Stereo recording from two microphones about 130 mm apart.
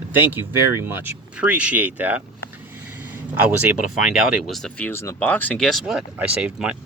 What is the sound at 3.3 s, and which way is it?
Speech, 10° right (ahead or behind).